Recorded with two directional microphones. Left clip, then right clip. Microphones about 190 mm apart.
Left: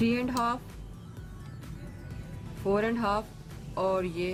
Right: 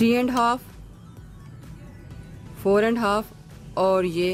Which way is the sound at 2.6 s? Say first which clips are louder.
Right 8 dB; 45° right (ahead or behind).